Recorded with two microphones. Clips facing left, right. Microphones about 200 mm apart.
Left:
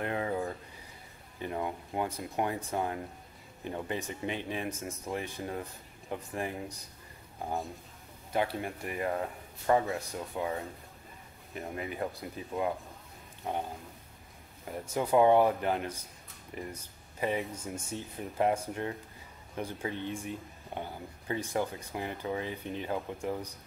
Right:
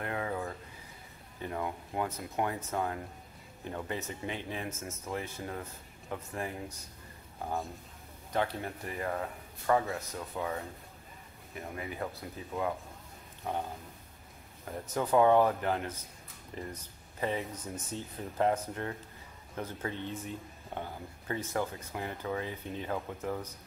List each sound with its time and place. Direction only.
0.0 s a sound: 25° left (ahead or behind)
1.4 s speech: 20° left (ahead or behind)
8.3 s speech: 15° left (ahead or behind)
10.1 s speech: 15° left (ahead or behind)
11.5 s speech: 20° left (ahead or behind)
14.7 s speech: 15° left (ahead or behind)